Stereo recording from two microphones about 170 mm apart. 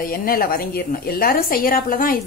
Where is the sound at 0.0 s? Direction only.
60° left (ahead or behind).